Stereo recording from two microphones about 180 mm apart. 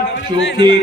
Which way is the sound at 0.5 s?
30° right (ahead or behind).